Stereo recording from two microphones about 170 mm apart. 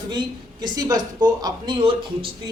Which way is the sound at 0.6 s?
20° right (ahead or behind).